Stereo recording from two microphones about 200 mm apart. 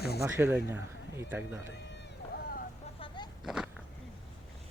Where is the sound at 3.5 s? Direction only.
5° right (ahead or behind).